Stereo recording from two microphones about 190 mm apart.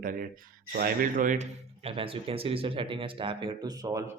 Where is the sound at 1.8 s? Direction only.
30° right (ahead or behind).